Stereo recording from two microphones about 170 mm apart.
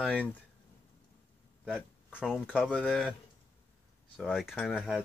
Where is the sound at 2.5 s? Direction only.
Centre (ahead or behind).